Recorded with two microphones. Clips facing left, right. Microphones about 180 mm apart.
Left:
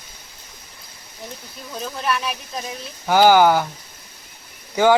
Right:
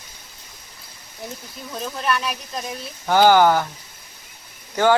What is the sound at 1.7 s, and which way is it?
Speech, centre (ahead or behind).